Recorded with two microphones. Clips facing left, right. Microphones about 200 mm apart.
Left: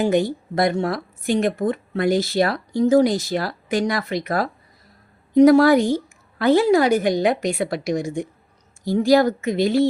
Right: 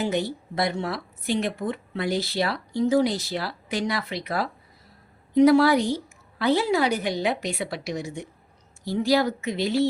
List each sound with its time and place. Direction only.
0.0 s speech: 50° left (ahead or behind)